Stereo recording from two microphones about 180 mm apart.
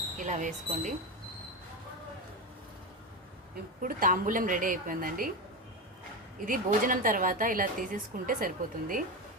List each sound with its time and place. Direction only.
0.2 s a woman's voice: 45° right (ahead or behind)
3.8 s a woman's voice: 50° right (ahead or behind)
6.4 s a woman's voice: 50° right (ahead or behind)